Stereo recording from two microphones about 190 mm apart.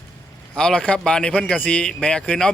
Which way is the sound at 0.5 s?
5° left (ahead or behind).